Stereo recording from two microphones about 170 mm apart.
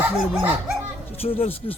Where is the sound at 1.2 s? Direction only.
35° left (ahead or behind).